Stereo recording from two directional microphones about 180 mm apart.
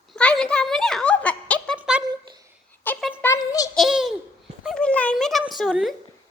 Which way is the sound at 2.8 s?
10° left (ahead or behind).